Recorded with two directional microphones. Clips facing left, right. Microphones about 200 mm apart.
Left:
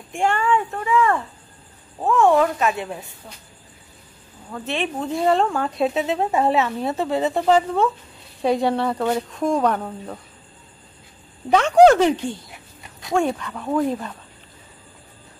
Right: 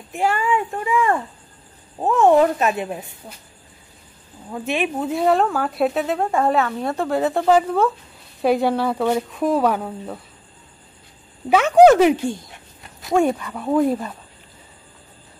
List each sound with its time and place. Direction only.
0.1 s speech: 5° right (ahead or behind)
4.5 s speech: 15° right (ahead or behind)
11.5 s speech: 5° right (ahead or behind)